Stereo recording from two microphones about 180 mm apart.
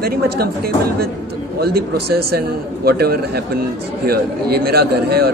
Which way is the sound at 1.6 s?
60° right (ahead or behind).